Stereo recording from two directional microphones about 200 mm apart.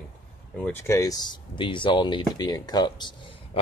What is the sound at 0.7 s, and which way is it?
Speech, 15° left (ahead or behind).